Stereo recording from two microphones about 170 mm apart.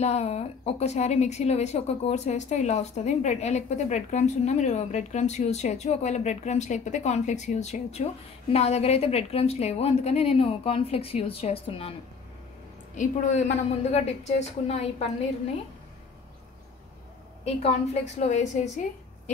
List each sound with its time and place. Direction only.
0.0 s a woman's voice: 40° left (ahead or behind)
12.9 s a woman's voice: 45° left (ahead or behind)
17.5 s a woman's voice: 35° left (ahead or behind)